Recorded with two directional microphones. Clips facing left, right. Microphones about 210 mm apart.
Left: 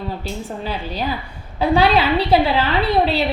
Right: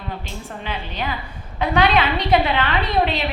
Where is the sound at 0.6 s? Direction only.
35° left (ahead or behind).